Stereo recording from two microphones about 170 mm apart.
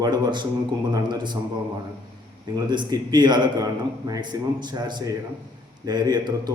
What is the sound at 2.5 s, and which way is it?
A man's voice, 25° right (ahead or behind).